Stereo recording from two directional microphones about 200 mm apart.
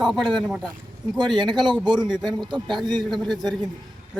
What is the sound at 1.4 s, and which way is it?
Speech, 25° right (ahead or behind).